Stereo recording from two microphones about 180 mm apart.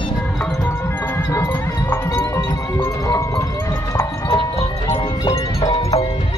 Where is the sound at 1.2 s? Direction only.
10° left (ahead or behind).